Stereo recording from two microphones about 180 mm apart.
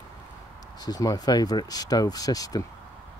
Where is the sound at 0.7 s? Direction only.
20° left (ahead or behind).